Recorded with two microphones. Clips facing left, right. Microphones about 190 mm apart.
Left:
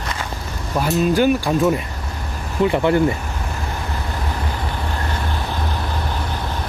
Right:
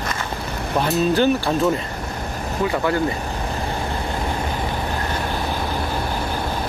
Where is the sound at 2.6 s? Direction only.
20° left (ahead or behind).